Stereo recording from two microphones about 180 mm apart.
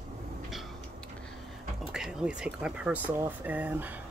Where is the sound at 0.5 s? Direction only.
Centre (ahead or behind).